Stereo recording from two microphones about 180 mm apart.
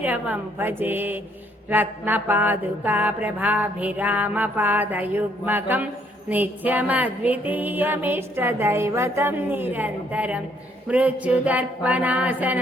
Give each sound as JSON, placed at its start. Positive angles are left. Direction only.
{"t": 0.0, "sound": "mantra", "side_deg": -10}